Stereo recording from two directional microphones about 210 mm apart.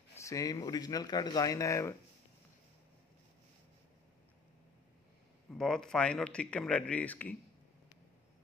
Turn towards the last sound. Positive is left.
turn(degrees=5)  # may be behind; listen again after turning